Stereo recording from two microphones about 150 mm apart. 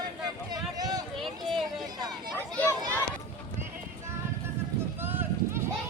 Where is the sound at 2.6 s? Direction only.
10° left (ahead or behind).